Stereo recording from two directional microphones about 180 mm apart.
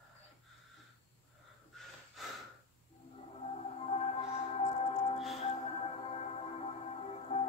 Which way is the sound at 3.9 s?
35° left (ahead or behind).